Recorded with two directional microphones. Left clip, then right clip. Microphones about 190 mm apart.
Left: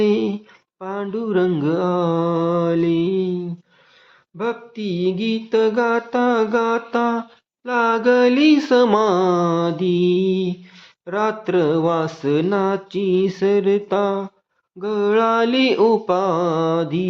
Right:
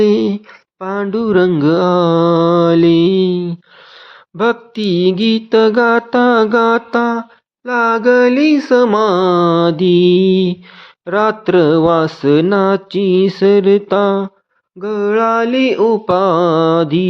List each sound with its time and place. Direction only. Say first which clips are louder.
0.0 s a sound: right 6 dB; 25° right (ahead or behind)
0.8 s mantra: right 7 dB; 30° right (ahead or behind)
14.8 s mantra: right 3 dB; 15° right (ahead or behind)
16.0 s mantra: right 7 dB; 25° right (ahead or behind)